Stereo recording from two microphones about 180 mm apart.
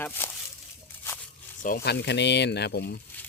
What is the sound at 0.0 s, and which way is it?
Speech, 10° left (ahead or behind).